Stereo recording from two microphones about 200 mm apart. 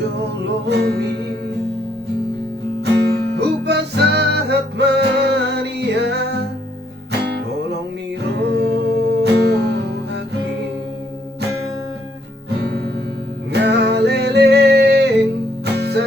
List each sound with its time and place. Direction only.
0.7 s music: 50° right (ahead or behind)
2.8 s music: 55° right (ahead or behind)
8.3 s music: 55° right (ahead or behind)
12.5 s music: 50° right (ahead or behind)